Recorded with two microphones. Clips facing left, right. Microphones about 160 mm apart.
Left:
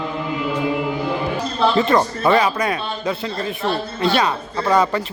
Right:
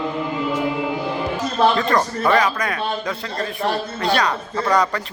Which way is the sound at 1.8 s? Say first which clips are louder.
Left 3 dB; 20° left (ahead or behind).